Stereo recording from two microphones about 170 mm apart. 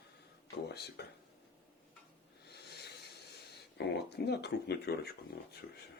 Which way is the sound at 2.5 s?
70° left (ahead or behind).